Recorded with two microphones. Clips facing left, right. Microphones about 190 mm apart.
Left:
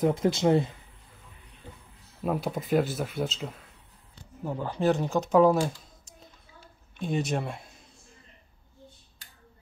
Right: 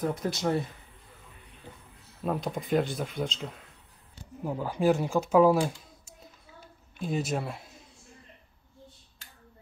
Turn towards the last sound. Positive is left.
turn(degrees=-5)  # may be behind; listen again after turning